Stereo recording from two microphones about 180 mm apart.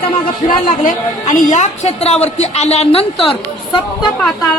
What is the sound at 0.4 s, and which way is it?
A woman's voice, 45° left (ahead or behind).